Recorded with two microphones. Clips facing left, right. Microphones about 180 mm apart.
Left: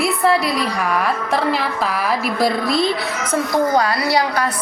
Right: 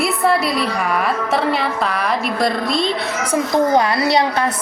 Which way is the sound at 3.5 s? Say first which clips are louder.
Right 2 dB; 25° right (ahead or behind).